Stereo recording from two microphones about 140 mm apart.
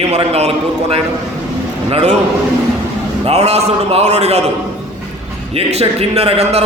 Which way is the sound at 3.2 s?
50° right (ahead or behind).